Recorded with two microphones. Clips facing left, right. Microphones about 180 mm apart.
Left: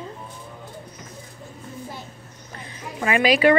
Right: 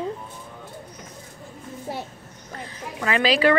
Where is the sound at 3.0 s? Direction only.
10° left (ahead or behind).